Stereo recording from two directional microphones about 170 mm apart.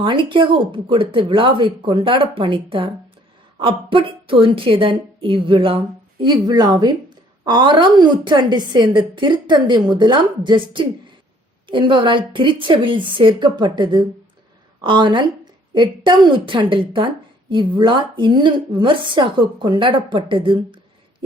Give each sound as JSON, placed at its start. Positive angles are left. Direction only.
{"t": 0.0, "sound": "a woman's voice", "side_deg": -30}